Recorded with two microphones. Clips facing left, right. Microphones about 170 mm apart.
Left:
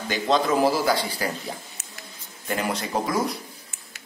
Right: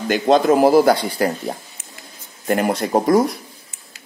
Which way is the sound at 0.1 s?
50° right (ahead or behind).